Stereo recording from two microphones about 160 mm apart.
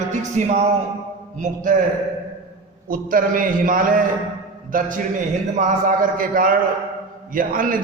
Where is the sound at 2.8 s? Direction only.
60° right (ahead or behind).